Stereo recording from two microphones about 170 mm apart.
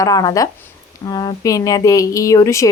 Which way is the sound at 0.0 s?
20° left (ahead or behind).